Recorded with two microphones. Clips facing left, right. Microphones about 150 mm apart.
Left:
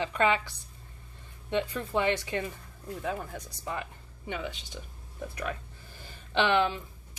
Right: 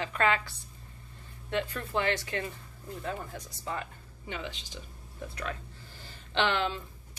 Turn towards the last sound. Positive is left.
turn(degrees=15)  # may be behind; listen again after turning